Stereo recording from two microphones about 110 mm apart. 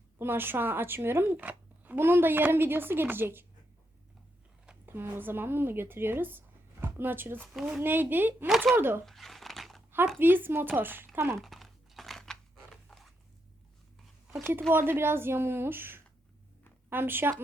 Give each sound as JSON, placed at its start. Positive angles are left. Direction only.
{"t": 0.2, "sound": "speech", "side_deg": -20}
{"t": 4.9, "sound": "speech", "side_deg": -20}
{"t": 7.5, "sound": "speech", "side_deg": -5}
{"t": 7.8, "sound": "speech", "side_deg": -20}
{"t": 8.4, "sound": "speech", "side_deg": 0}
{"t": 8.7, "sound": "speech", "side_deg": -20}
{"t": 9.0, "sound": "crumpling", "side_deg": 0}
{"t": 10.2, "sound": "speech", "side_deg": -20}
{"t": 11.3, "sound": "crumpling", "side_deg": 0}
{"t": 12.9, "sound": "zipper", "side_deg": 0}
{"t": 14.3, "sound": "speech", "side_deg": 0}
{"t": 14.7, "sound": "speech", "side_deg": -20}